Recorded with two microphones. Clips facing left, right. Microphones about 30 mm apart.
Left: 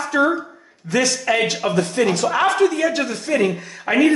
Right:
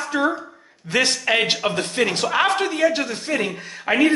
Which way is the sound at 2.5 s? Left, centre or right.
Right.